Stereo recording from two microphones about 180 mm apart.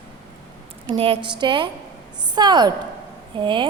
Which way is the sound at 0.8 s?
30° right (ahead or behind).